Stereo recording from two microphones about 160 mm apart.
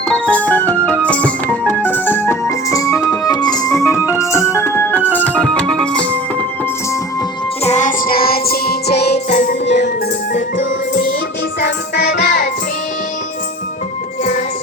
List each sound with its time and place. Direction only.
0.1 s music: 10° left (ahead or behind)
4.0 s organ: 10° right (ahead or behind)
4.3 s music: 15° left (ahead or behind)
7.6 s music: 45° left (ahead or behind); by 9.7 s 90° left
11.6 s music: 90° left